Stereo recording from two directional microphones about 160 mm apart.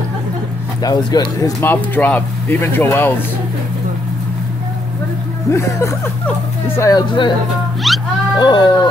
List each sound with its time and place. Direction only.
0.8 s speech: 25° left (ahead or behind)
1.6 s speech: 10° left (ahead or behind)
5.5 s speech: 15° left (ahead or behind)
7.8 s speech: centre (ahead or behind)
8.4 s speech: 25° left (ahead or behind)